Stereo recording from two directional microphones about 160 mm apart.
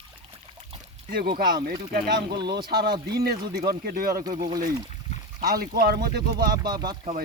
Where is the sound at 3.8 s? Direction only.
65° right (ahead or behind).